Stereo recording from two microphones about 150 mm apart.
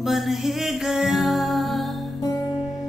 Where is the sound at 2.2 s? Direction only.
20° left (ahead or behind).